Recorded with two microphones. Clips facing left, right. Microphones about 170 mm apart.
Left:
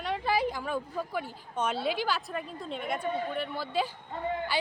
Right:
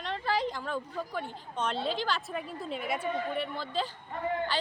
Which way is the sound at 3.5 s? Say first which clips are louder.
Left 3 dB; 10° left (ahead or behind).